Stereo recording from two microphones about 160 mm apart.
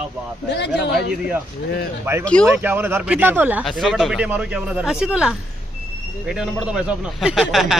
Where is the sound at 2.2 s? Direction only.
5° left (ahead or behind).